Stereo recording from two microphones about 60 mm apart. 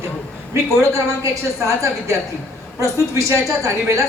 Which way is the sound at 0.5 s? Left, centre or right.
Right.